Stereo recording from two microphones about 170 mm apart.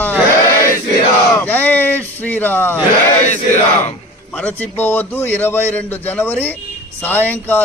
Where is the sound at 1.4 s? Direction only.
10° left (ahead or behind).